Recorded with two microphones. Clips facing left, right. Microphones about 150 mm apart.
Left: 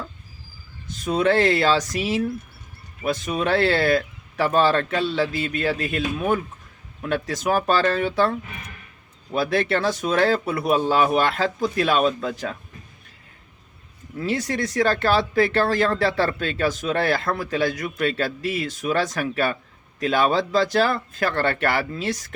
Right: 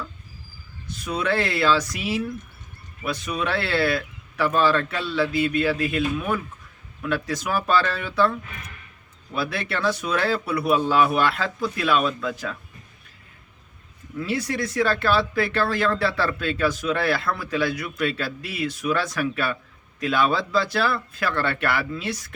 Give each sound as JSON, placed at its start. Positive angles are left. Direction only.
{"t": 1.1, "sound": "a man's voice", "side_deg": 35}
{"t": 3.3, "sound": "a man's voice", "side_deg": 35}
{"t": 14.2, "sound": "a man's voice", "side_deg": 40}